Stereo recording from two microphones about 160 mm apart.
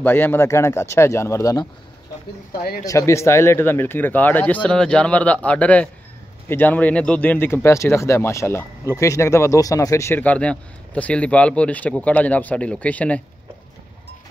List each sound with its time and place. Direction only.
0.0 s speech: 10° left (ahead or behind)
2.8 s speech: 20° left (ahead or behind)